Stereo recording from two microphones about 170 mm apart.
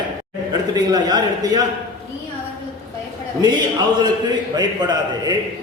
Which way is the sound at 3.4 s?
25° right (ahead or behind).